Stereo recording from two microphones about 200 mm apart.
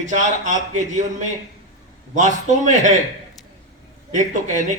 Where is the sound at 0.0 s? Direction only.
40° right (ahead or behind).